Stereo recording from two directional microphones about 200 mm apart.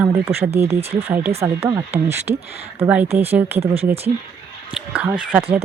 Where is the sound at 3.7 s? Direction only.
30° right (ahead or behind).